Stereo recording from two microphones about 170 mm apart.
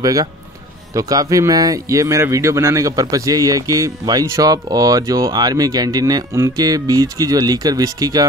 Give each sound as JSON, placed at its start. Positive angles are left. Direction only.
{"t": 0.0, "sound": "a man's voice", "side_deg": -20}